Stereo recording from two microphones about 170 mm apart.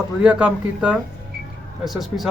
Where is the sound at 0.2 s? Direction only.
5° right (ahead or behind).